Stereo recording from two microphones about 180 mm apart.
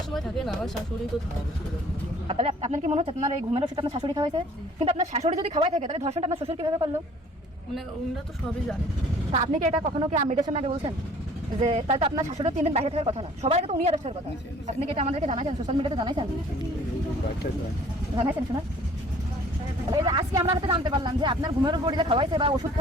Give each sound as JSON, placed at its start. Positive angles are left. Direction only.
{"t": 0.1, "sound": "speech", "side_deg": 0}
{"t": 2.2, "sound": "speech", "side_deg": -35}
{"t": 4.8, "sound": "speech", "side_deg": -35}
{"t": 9.3, "sound": "speech", "side_deg": -40}
{"t": 19.9, "sound": "speech", "side_deg": -25}